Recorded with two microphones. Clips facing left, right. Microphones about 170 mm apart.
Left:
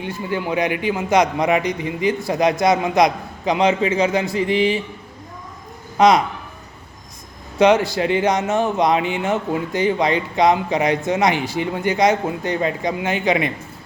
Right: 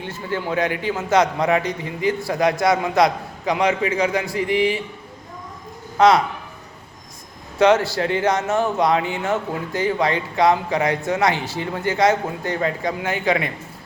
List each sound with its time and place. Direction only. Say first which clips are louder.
0.0 s a man's voice: left 2 dB; 15° left (ahead or behind)
6.0 s speech: left 1 dB; 15° left (ahead or behind)
7.6 s a man's voice: left 1 dB; 15° left (ahead or behind)